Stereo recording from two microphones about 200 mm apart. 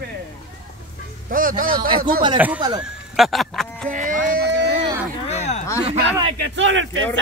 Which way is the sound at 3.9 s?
40° right (ahead or behind).